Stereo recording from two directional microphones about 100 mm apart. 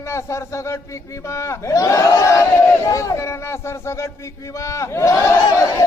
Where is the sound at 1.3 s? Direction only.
30° left (ahead or behind).